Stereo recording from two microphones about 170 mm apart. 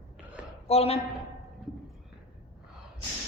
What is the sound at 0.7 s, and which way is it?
Speech, 35° left (ahead or behind).